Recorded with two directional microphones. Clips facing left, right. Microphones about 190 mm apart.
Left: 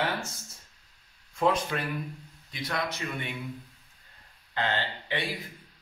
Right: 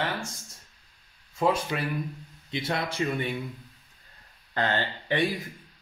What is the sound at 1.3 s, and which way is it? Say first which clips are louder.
Speech: right 1 dB; 10° right (ahead or behind).